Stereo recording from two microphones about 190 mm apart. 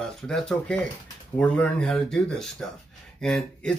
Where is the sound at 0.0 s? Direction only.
5° left (ahead or behind).